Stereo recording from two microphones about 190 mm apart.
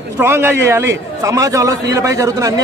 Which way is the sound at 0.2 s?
15° right (ahead or behind).